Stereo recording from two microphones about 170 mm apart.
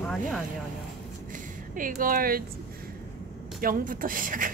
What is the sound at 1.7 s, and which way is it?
Speech, 55° right (ahead or behind).